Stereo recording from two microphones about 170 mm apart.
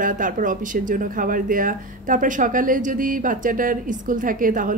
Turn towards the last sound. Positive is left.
turn(degrees=-50)  # may be behind; listen again after turning